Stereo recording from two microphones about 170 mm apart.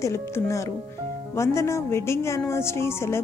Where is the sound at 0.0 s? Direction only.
15° left (ahead or behind).